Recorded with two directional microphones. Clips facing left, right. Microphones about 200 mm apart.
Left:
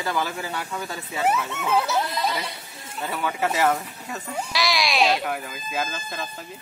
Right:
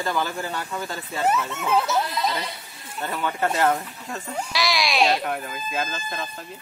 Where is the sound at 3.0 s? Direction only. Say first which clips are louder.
Even; 5° left (ahead or behind).